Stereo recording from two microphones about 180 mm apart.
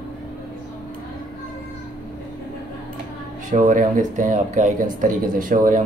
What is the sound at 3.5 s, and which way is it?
Speech, 45° right (ahead or behind).